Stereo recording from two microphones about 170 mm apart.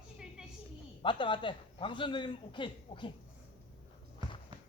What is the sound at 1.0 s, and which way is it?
A man's voice, 30° left (ahead or behind).